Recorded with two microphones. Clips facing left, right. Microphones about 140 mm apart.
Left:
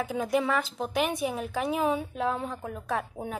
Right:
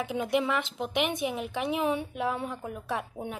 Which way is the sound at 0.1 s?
40° left (ahead or behind).